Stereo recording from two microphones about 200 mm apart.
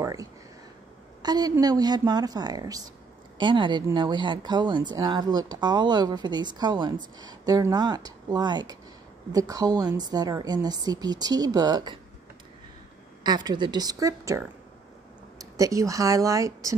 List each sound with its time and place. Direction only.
0.0 s a sound: 15° right (ahead or behind)
1.2 s speech: 20° right (ahead or behind)
13.2 s speech: 20° right (ahead or behind)